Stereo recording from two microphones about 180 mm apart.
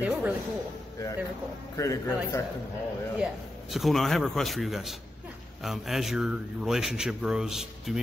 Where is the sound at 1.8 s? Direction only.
15° left (ahead or behind).